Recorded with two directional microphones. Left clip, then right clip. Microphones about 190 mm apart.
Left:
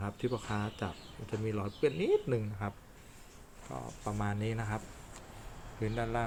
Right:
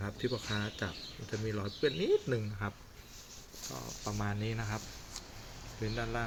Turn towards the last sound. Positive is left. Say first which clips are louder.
# left 2 dB
turn(degrees=10)  # may be behind; listen again after turning